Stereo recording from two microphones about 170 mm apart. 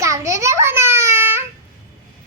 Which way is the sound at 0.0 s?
15° right (ahead or behind).